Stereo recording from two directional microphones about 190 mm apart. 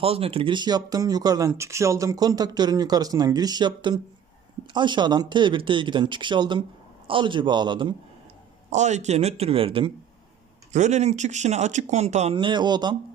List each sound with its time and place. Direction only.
0.0 s speech: 30° right (ahead or behind)
8.7 s speech: 35° right (ahead or behind); by 13.0 s 20° right (ahead or behind)